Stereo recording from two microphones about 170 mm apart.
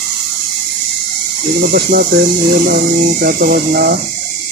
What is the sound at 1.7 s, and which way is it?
Speech, 65° right (ahead or behind).